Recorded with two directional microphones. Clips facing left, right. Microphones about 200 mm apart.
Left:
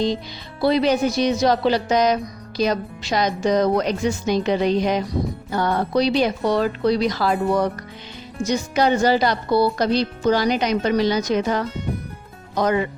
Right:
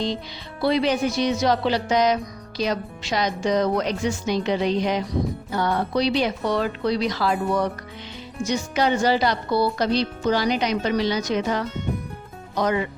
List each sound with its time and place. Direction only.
0.6 s speech: 40° left (ahead or behind)
2.6 s music: 40° left (ahead or behind)